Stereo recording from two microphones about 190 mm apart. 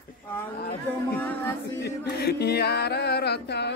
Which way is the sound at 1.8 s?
55° left (ahead or behind).